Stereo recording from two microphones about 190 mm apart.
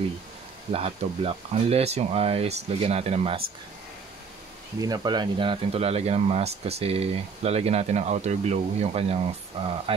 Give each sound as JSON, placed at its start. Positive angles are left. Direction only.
{"t": 0.7, "sound": "speech", "side_deg": -30}
{"t": 4.7, "sound": "speech", "side_deg": -20}